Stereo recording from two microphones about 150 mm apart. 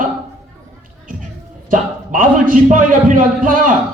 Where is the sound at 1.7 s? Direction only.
65° right (ahead or behind).